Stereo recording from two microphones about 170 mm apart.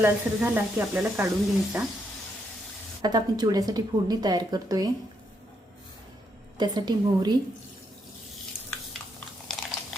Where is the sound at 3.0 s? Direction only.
25° right (ahead or behind).